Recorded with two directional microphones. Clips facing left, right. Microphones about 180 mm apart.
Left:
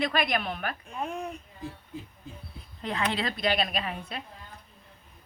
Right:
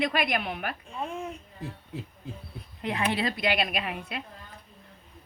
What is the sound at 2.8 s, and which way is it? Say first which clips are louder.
Speech: right 2 dB; 20° right (ahead or behind).